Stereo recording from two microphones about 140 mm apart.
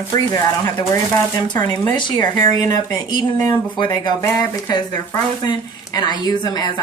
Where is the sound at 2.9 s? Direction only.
30° left (ahead or behind).